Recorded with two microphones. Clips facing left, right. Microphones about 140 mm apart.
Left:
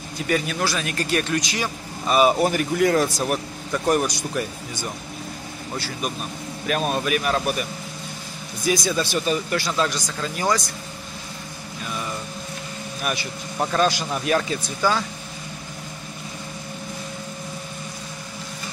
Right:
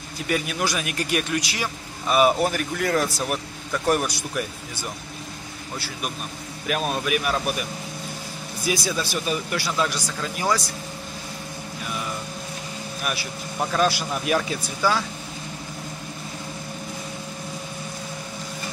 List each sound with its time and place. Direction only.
0.3 s speech: 10° right (ahead or behind)
6.7 s speech: 5° right (ahead or behind)
8.6 s speech: 5° right (ahead or behind)
13.0 s speech: 5° right (ahead or behind)